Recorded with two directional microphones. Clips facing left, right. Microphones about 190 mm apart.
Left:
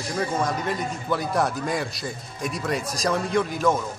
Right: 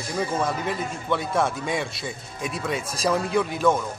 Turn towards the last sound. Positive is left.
turn(degrees=0)  # may be behind; listen again after turning